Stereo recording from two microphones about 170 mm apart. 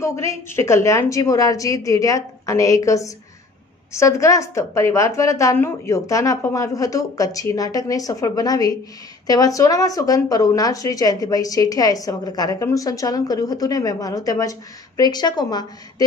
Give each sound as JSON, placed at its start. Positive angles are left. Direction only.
{"t": 0.0, "sound": "speech", "side_deg": 15}